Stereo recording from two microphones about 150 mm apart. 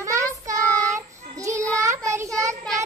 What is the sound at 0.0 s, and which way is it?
Child singing, 20° right (ahead or behind).